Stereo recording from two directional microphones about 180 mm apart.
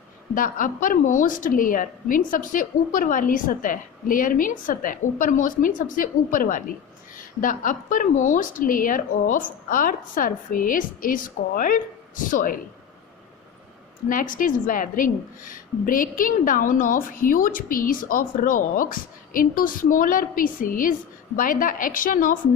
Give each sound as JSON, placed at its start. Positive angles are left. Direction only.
{"t": 0.3, "sound": "a woman's voice", "side_deg": 50}
{"t": 14.1, "sound": "a woman's voice", "side_deg": 50}